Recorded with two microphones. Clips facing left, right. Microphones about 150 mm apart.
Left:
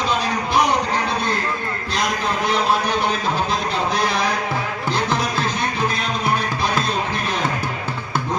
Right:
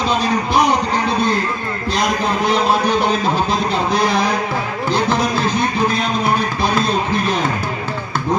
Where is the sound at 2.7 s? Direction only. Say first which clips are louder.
Right 4 dB; 30° right (ahead or behind).